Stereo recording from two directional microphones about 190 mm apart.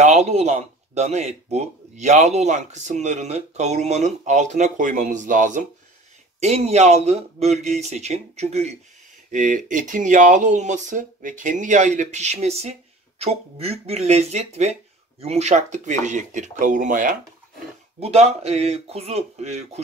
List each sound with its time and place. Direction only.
0.0 s speech: 35° right (ahead or behind)